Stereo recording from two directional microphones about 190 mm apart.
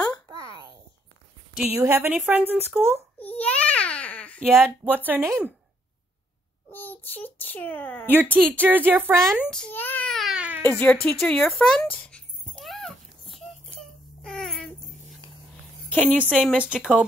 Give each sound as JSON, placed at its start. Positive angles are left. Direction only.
{"t": 0.3, "sound": "a sound", "side_deg": -20}
{"t": 1.8, "sound": "a woman's voice", "side_deg": -10}
{"t": 3.2, "sound": "babbling", "side_deg": 5}
{"t": 4.5, "sound": "speech", "side_deg": 0}
{"t": 4.8, "sound": "a woman's voice", "side_deg": -10}
{"t": 6.7, "sound": "a child's voice", "side_deg": 10}
{"t": 8.1, "sound": "a woman's voice", "side_deg": -10}
{"t": 9.4, "sound": "baby cry", "side_deg": 5}
{"t": 10.7, "sound": "speech", "side_deg": 10}
{"t": 12.5, "sound": "baby cry", "side_deg": 0}
{"t": 15.9, "sound": "a woman's voice", "side_deg": 5}